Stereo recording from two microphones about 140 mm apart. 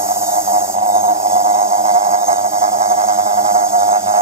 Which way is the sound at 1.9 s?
60° right (ahead or behind).